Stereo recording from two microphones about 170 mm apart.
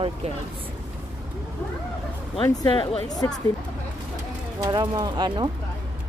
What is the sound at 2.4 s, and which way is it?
Speech, 25° left (ahead or behind).